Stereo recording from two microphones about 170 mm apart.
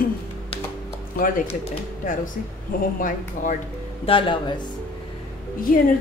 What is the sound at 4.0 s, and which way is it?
Speech, 30° left (ahead or behind).